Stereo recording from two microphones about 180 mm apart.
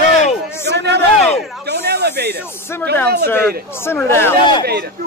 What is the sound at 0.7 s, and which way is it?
A man's voice, 70° right (ahead or behind).